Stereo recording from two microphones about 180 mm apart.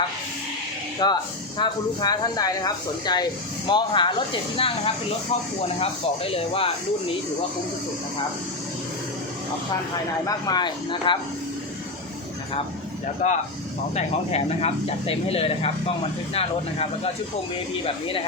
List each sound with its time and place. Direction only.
1.0 s speech: 20° left (ahead or behind)
10.2 s speech: 20° left (ahead or behind)
13.2 s speech: 40° left (ahead or behind)